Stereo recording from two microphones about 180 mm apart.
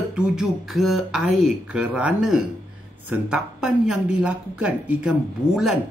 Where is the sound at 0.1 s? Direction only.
5° right (ahead or behind).